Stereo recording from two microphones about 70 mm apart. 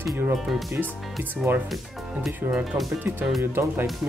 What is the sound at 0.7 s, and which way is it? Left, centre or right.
Speech, right.